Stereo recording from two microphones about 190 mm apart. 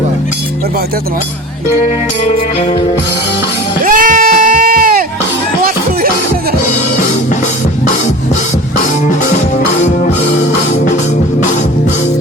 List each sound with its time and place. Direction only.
3.8 s goat: 45° right (ahead or behind)